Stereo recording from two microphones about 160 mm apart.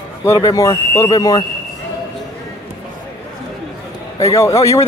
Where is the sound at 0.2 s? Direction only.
20° left (ahead or behind).